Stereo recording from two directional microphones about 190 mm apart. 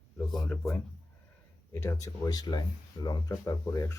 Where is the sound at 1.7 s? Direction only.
15° left (ahead or behind).